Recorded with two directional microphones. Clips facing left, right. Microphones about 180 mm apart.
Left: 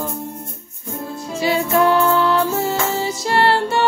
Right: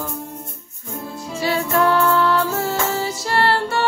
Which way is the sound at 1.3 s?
20° left (ahead or behind).